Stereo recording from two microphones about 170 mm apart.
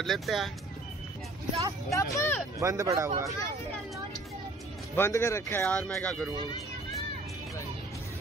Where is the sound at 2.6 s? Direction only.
20° right (ahead or behind).